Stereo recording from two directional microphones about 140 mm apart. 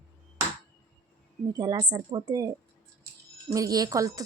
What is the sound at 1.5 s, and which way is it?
Speech, 30° right (ahead or behind).